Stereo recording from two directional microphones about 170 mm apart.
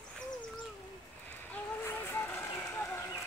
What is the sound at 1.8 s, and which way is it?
Vehicle, 15° left (ahead or behind).